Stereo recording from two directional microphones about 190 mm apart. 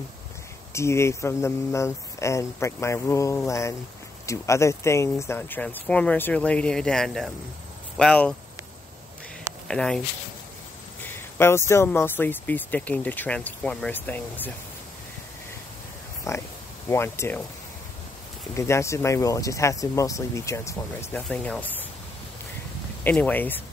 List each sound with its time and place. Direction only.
0.7 s speech: 15° left (ahead or behind)
9.7 s speech: 5° left (ahead or behind)
16.3 s speech: 15° left (ahead or behind)
18.5 s speech: 15° left (ahead or behind)
23.0 s speech: 10° left (ahead or behind)